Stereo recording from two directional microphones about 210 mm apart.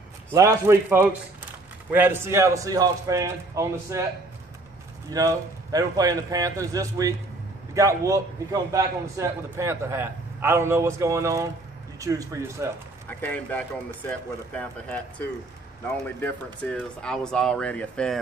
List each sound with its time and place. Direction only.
0.3 s a man's voice: 15° right (ahead or behind)
5.1 s a man's voice: 15° right (ahead or behind)
13.1 s speech: 5° left (ahead or behind)
16.6 s speech: 5° left (ahead or behind)